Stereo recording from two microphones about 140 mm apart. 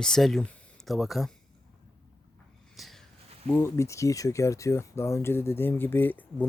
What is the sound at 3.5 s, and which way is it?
Speech, 15° left (ahead or behind).